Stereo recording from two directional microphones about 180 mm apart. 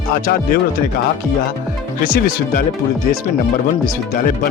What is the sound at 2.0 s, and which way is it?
Speech, 55° left (ahead or behind).